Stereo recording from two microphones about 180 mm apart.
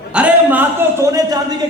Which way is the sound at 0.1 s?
5° right (ahead or behind).